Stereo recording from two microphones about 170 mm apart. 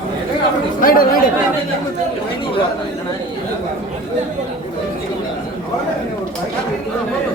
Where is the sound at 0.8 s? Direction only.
60° left (ahead or behind).